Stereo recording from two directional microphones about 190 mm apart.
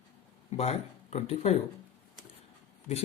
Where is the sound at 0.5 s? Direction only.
35° left (ahead or behind).